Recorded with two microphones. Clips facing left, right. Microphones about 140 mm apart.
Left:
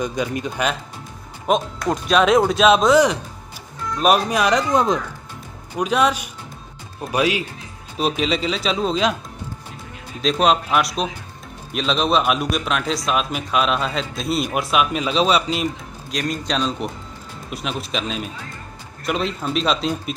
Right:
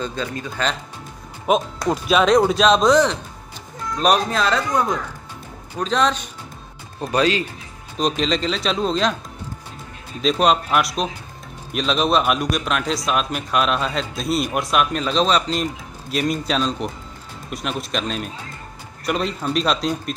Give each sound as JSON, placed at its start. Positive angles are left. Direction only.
{"t": 0.0, "sound": "speech", "side_deg": 15}
{"t": 1.5, "sound": "a man's voice", "side_deg": -5}
{"t": 4.3, "sound": "speech", "side_deg": 15}
{"t": 5.8, "sound": "a man's voice", "side_deg": 10}
{"t": 10.2, "sound": "a man's voice", "side_deg": 0}
{"t": 16.1, "sound": "a man's voice", "side_deg": -5}